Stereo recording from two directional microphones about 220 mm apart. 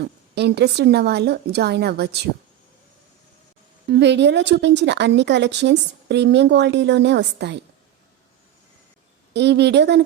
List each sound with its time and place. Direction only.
0.0 s speech: 50° right (ahead or behind)
3.8 s speech: 50° right (ahead or behind)
9.3 s speech: 50° right (ahead or behind)